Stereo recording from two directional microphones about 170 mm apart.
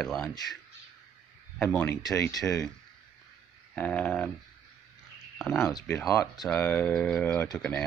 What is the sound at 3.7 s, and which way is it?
Speech, 10° left (ahead or behind).